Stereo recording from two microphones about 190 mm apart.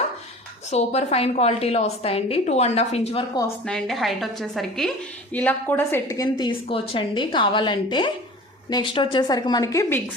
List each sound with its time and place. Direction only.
0.7 s a woman's voice: 35° left (ahead or behind)
3.7 s a woman's voice: centre (ahead or behind); by 10.0 s 20° left (ahead or behind)